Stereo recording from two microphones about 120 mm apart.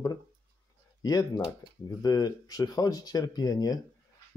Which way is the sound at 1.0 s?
30° left (ahead or behind).